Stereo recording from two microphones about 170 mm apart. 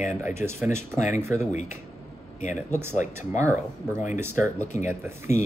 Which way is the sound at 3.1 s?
15° right (ahead or behind).